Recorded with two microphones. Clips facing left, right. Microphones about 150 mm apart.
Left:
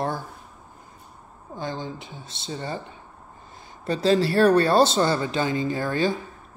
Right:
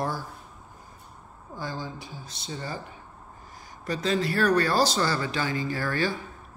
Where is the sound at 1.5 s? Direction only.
20° left (ahead or behind).